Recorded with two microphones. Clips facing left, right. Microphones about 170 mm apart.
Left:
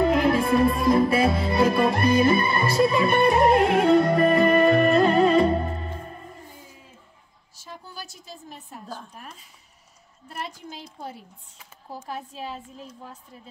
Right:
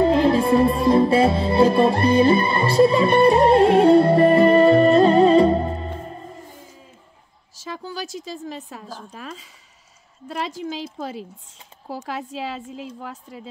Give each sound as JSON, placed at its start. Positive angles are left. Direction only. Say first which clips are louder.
{"t": 0.0, "sound": "music", "louder": "right 4 dB", "side_deg": -30}
{"t": 7.5, "sound": "a woman's voice", "louder": "right 9 dB", "side_deg": -90}